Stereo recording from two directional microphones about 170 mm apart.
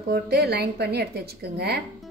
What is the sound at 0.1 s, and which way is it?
A woman's voice, 70° right (ahead or behind).